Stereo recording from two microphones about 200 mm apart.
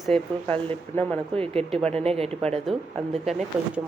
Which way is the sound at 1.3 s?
30° right (ahead or behind).